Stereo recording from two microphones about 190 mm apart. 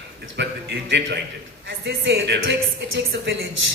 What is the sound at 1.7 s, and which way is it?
Speech, 70° right (ahead or behind).